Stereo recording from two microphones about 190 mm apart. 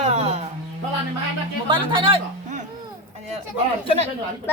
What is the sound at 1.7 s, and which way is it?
Speech, 25° right (ahead or behind).